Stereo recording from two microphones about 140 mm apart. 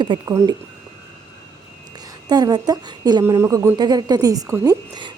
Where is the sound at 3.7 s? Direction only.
30° right (ahead or behind).